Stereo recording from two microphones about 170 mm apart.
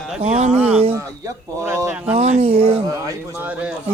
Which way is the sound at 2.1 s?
40° right (ahead or behind).